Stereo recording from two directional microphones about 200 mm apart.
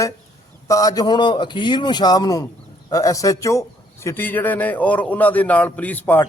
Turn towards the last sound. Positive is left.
turn(degrees=10)  # may be behind; listen again after turning